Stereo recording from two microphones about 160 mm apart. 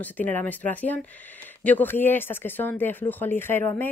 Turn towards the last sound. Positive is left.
turn(degrees=15)  # may be behind; listen again after turning